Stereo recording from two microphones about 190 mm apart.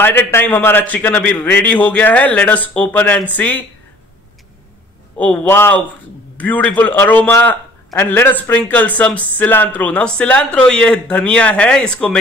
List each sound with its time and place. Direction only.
0.0 s a man's voice: 10° left (ahead or behind)
5.1 s a man's voice: 10° left (ahead or behind)